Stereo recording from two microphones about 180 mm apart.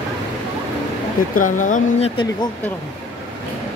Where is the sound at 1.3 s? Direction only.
45° left (ahead or behind).